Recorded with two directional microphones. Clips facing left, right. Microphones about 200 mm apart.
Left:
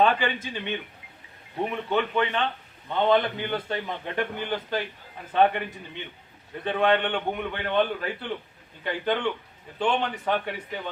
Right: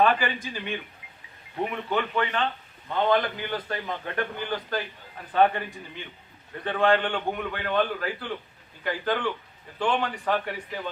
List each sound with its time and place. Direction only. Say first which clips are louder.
0.0 s a man's voice: even; 25° left (ahead or behind)